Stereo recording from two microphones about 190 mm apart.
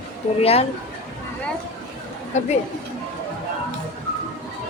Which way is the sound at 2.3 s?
40° left (ahead or behind).